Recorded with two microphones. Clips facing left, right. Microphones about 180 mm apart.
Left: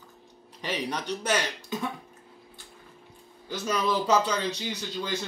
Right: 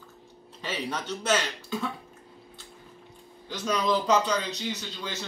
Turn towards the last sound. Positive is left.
turn(degrees=10)  # may be behind; listen again after turning